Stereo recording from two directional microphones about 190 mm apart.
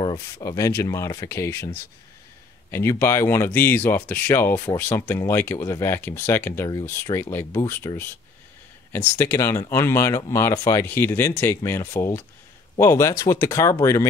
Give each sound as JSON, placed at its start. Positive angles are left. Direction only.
{"t": 0.0, "sound": "speech", "side_deg": 20}
{"t": 2.7, "sound": "speech", "side_deg": 15}